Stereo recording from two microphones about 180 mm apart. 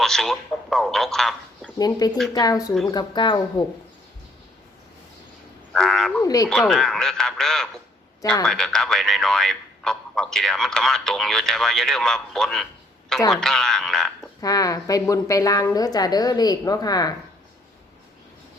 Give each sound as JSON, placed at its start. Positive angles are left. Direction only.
{"t": 0.0, "sound": "a man's voice", "side_deg": 0}
{"t": 1.8, "sound": "a woman's voice", "side_deg": 20}
{"t": 5.7, "sound": "speech", "side_deg": 5}
{"t": 6.2, "sound": "a woman's voice", "side_deg": 20}
{"t": 6.5, "sound": "speech", "side_deg": 0}
{"t": 14.4, "sound": "a woman's voice", "side_deg": 20}